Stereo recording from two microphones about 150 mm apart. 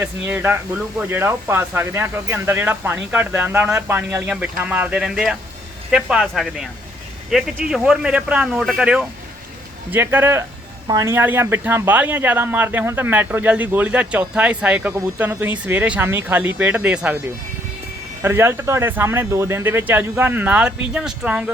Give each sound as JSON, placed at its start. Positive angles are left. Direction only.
{"t": 0.0, "sound": "speech", "side_deg": -10}
{"t": 18.2, "sound": "speech", "side_deg": -15}